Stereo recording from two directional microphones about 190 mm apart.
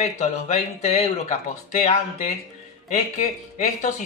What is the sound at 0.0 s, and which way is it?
Speech, 35° left (ahead or behind).